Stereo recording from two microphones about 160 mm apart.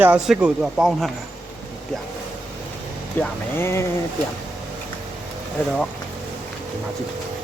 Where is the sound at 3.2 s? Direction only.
15° left (ahead or behind).